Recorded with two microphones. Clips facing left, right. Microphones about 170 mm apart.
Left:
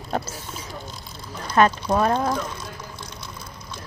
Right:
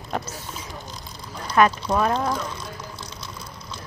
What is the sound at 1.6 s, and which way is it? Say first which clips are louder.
Speech: even; 30° left (ahead or behind).